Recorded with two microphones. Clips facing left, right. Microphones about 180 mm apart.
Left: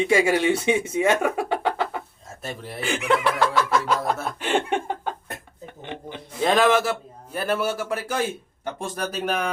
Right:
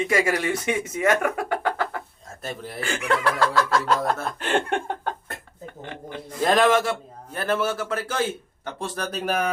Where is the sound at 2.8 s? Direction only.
20° left (ahead or behind).